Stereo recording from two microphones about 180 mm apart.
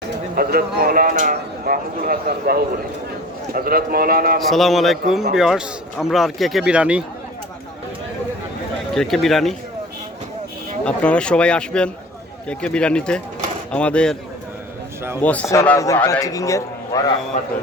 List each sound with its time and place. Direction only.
0.3 s speech: 55° right (ahead or behind)
4.4 s speech: centre (ahead or behind)
9.0 s speech: centre (ahead or behind)
10.8 s speech: 5° left (ahead or behind)
15.2 s a man's voice: 10° left (ahead or behind)